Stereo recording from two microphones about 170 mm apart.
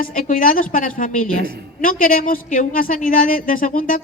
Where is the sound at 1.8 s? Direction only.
55° left (ahead or behind).